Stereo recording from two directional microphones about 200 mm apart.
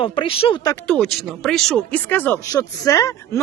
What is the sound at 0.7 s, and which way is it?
A woman's voice, 5° left (ahead or behind).